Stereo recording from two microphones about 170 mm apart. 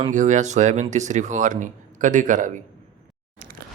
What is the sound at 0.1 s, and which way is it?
Speech, 45° right (ahead or behind).